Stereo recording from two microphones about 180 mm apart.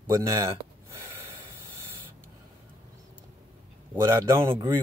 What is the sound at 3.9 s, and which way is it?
Speech, 15° right (ahead or behind).